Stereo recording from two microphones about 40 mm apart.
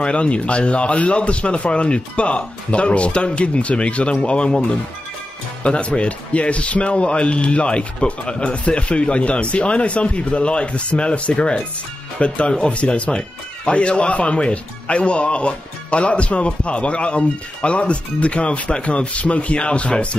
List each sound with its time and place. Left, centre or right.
0.0 s speech: left